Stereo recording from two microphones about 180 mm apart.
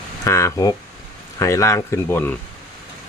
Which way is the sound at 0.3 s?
15° left (ahead or behind).